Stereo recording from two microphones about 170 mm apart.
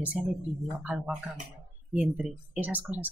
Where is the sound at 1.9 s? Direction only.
10° right (ahead or behind).